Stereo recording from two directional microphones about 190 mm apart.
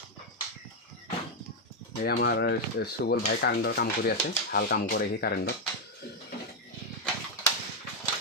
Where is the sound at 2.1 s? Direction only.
55° left (ahead or behind).